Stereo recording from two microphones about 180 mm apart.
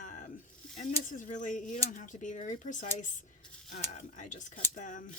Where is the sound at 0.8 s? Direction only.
45° left (ahead or behind).